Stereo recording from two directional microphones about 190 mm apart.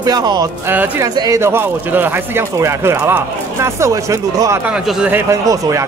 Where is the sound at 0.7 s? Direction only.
10° right (ahead or behind).